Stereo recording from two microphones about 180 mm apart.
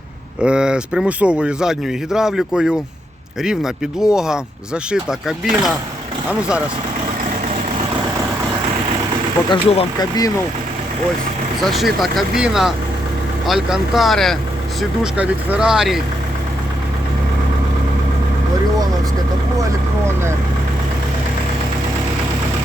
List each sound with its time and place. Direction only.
0.4 s speech: 5° right (ahead or behind)
9.5 s speech: 25° left (ahead or behind)
11.6 s speech: centre (ahead or behind)